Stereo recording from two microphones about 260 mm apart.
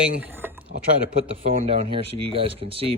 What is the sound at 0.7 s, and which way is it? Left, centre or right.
Speech, right.